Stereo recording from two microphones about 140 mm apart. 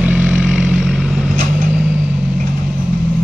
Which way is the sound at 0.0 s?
10° right (ahead or behind).